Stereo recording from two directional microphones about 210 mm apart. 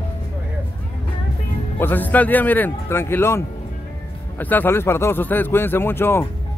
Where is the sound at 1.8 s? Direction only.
10° left (ahead or behind).